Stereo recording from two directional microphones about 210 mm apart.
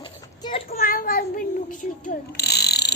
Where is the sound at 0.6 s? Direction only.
45° left (ahead or behind).